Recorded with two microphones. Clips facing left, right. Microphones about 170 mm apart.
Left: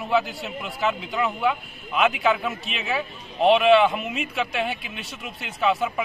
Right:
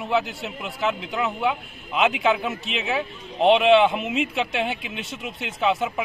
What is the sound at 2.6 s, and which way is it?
Speech, 90° right.